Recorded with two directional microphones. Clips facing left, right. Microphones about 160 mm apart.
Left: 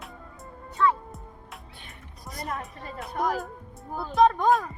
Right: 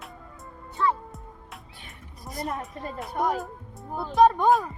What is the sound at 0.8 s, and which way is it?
Speech, 20° right (ahead or behind).